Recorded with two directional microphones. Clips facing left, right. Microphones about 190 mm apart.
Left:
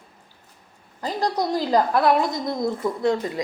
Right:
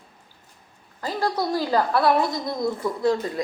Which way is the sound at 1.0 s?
15° left (ahead or behind).